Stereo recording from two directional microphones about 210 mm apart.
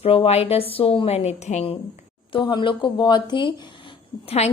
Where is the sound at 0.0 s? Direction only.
25° left (ahead or behind).